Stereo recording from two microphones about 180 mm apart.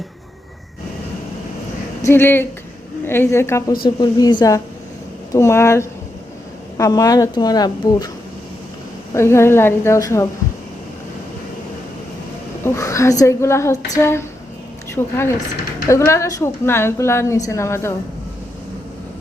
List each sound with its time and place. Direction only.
2.0 s a woman's voice: 15° left (ahead or behind)
9.1 s a woman's voice: 15° left (ahead or behind)
12.6 s a woman's voice: 15° left (ahead or behind)